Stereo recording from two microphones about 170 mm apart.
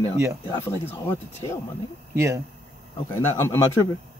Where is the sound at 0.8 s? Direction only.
15° left (ahead or behind).